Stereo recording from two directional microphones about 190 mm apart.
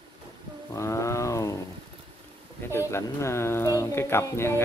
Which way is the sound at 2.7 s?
15° left (ahead or behind).